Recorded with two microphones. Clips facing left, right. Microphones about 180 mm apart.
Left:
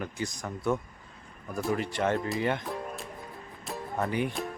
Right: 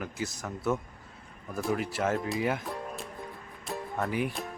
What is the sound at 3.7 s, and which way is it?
Music, centre (ahead or behind).